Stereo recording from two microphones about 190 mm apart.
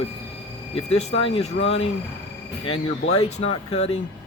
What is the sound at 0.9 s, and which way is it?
Speech, 30° left (ahead or behind).